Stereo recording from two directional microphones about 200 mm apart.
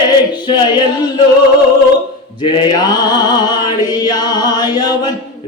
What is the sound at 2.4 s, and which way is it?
A capella, 20° left (ahead or behind).